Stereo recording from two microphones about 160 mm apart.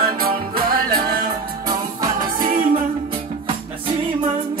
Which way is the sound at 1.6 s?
25° right (ahead or behind).